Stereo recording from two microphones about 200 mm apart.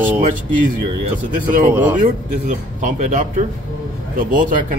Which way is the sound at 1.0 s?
40° right (ahead or behind).